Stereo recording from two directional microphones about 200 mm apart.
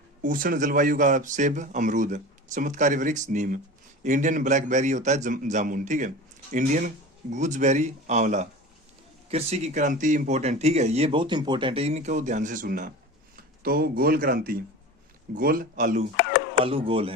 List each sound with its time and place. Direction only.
0.2 s a man's voice: 45° right (ahead or behind)
16.6 s speech: 30° right (ahead or behind)